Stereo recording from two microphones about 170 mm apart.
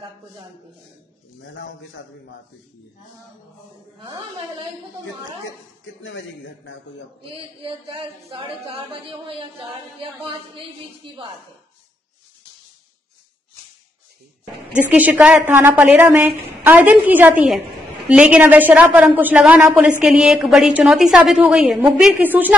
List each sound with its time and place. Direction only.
1.4 s speech: 90° left
4.0 s a woman's voice: 20° right (ahead or behind)
6.0 s speech: 90° left
7.2 s a sound: 30° right (ahead or behind)
11.0 s a woman's voice: 30° right (ahead or behind)
14.9 s a woman's voice: 10° right (ahead or behind)